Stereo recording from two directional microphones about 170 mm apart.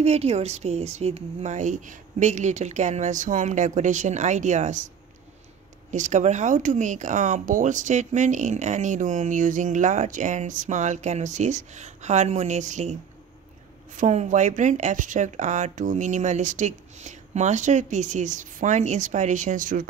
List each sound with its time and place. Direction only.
0.0 s speech: 40° right (ahead or behind)
13.9 s speech: 45° right (ahead or behind)